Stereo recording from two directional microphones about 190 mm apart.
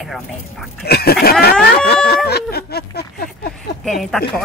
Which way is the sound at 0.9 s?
55° left (ahead or behind).